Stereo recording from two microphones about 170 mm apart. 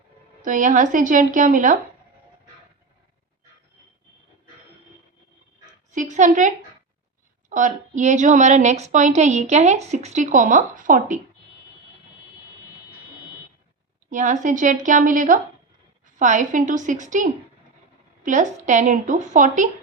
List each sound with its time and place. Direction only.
0.4 s a woman's voice: 50° right (ahead or behind)
5.9 s a woman's voice: 45° right (ahead or behind)
7.5 s a woman's voice: 50° right (ahead or behind)
14.1 s a woman's voice: 50° right (ahead or behind)